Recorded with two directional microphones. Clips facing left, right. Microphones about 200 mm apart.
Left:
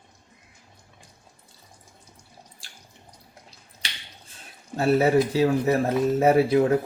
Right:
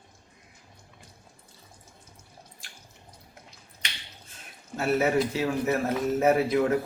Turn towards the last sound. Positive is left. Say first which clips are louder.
# left 4 dB
turn(degrees=30)  # may be behind; listen again after turning